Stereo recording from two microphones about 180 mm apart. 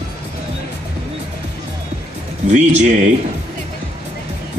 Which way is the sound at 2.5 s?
40° right (ahead or behind).